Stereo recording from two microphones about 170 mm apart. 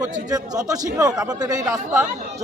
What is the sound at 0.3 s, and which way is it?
A man's voice, 20° right (ahead or behind).